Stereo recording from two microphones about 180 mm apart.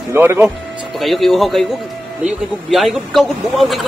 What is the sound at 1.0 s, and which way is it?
Speech, centre (ahead or behind).